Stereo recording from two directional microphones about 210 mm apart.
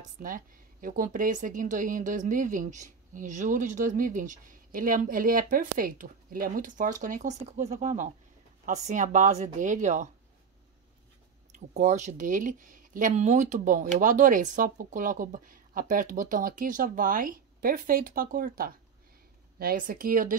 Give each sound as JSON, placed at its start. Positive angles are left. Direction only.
{"t": 0.2, "sound": "speech", "side_deg": -40}
{"t": 11.5, "sound": "speech", "side_deg": -35}